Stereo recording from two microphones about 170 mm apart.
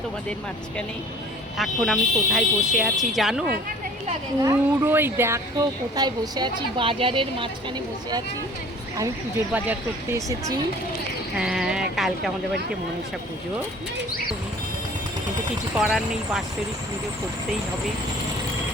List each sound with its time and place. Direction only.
1.5 s speech: centre (ahead or behind)
4.4 s speech: 15° right (ahead or behind); by 7.5 s 30° right (ahead or behind)
9.5 s speech: 10° right (ahead or behind)
11.3 s speech: 5° right (ahead or behind)
15.7 s speech: centre (ahead or behind)